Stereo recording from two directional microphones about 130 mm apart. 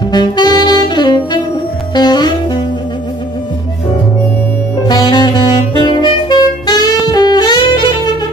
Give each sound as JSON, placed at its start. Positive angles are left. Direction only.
{"t": 0.1, "sound": "saxophone", "side_deg": 35}
{"t": 2.0, "sound": "music", "side_deg": 35}
{"t": 4.8, "sound": "saxophone", "side_deg": 35}